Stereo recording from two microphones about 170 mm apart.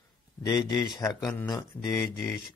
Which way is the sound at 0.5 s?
20° left (ahead or behind).